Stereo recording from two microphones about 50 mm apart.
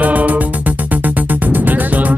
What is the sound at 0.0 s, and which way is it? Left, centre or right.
Music, right.